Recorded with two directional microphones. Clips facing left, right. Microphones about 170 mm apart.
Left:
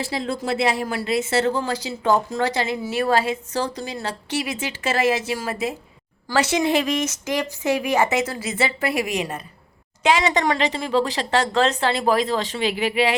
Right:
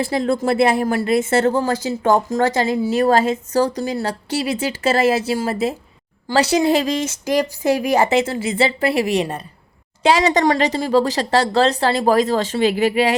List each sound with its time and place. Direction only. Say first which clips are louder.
0.0 s speech: right 7 dB; 50° right (ahead or behind)